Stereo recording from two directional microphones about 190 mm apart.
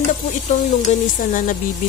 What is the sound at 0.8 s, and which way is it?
Speech, 45° left (ahead or behind).